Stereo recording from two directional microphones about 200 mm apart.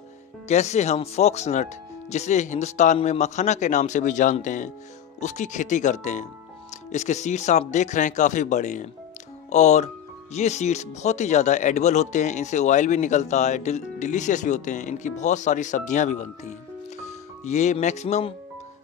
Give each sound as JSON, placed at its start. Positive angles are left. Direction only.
{"t": 0.5, "sound": "speech", "side_deg": 35}